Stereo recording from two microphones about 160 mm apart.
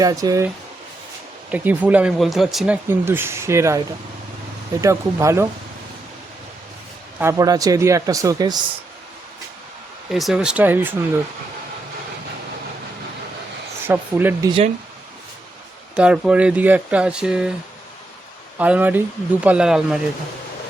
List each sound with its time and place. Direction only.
0.0 s speech: 20° right (ahead or behind)
1.5 s speech: 10° right (ahead or behind)
3.0 s speech: 15° right (ahead or behind)
4.8 s speech: 20° right (ahead or behind)
7.2 s speech: 20° right (ahead or behind)
10.1 s speech: centre (ahead or behind)
13.8 s speech: 10° right (ahead or behind)
16.0 s speech: 5° right (ahead or behind)
18.6 s speech: 10° right (ahead or behind)